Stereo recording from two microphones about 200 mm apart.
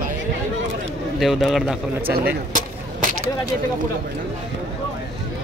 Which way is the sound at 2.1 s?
45° right (ahead or behind).